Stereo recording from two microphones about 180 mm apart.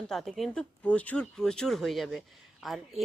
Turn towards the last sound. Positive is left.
turn(degrees=0)  # may be behind; listen again after turning